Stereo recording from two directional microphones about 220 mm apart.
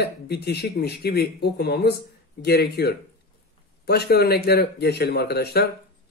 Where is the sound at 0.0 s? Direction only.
45° left (ahead or behind).